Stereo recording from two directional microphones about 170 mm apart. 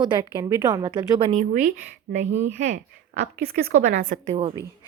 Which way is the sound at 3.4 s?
65° right (ahead or behind).